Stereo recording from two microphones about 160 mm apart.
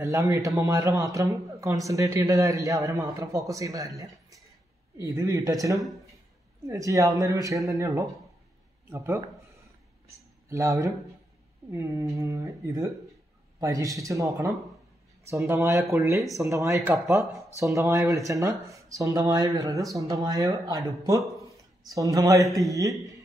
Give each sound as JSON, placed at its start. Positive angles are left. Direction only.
{"t": 0.0, "sound": "a man's voice", "side_deg": -20}
{"t": 4.9, "sound": "a man's voice", "side_deg": -20}